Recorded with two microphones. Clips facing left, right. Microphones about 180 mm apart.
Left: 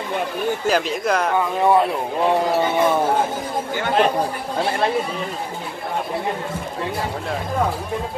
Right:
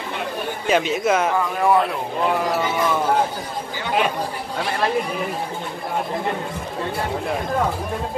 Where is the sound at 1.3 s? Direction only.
25° left (ahead or behind).